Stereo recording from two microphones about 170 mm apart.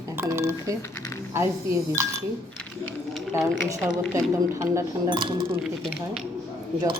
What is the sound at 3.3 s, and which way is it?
Speech, 15° right (ahead or behind).